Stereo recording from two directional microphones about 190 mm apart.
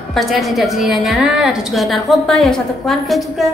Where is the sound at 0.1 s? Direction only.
Centre (ahead or behind).